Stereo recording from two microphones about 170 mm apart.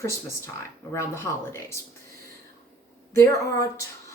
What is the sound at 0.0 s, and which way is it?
A woman's voice, 15° left (ahead or behind).